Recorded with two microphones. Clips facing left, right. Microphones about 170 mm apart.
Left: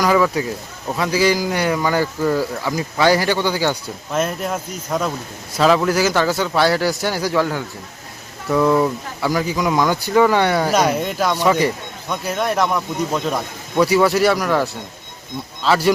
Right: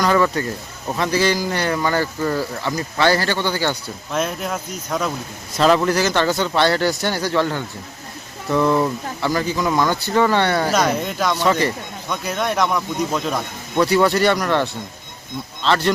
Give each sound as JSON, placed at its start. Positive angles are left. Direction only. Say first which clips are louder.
{"t": 0.0, "sound": "speech", "louder": "left 1 dB", "side_deg": 5}